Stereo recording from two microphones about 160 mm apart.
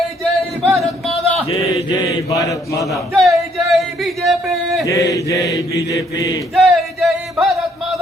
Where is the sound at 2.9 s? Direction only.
Centre (ahead or behind).